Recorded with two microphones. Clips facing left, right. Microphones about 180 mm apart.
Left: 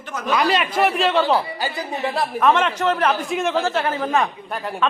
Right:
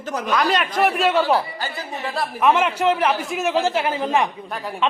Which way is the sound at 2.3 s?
10° right (ahead or behind).